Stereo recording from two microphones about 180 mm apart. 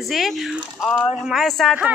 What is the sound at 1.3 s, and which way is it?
Speech, centre (ahead or behind).